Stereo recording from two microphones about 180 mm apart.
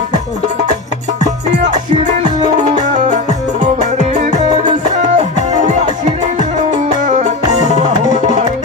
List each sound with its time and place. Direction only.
2.8 s music: 45° right (ahead or behind)
7.1 s music: 40° right (ahead or behind)